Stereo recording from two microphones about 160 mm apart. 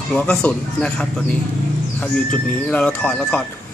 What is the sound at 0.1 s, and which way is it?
Speech, 5° left (ahead or behind).